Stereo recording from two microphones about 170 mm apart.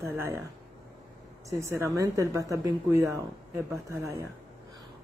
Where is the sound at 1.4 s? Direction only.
15° right (ahead or behind).